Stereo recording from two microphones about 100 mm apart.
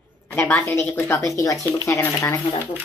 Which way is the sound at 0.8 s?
20° left (ahead or behind).